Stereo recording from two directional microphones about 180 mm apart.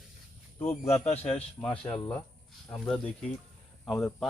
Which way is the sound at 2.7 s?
10° left (ahead or behind).